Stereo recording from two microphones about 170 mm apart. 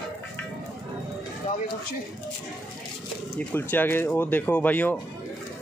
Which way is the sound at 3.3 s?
10° left (ahead or behind).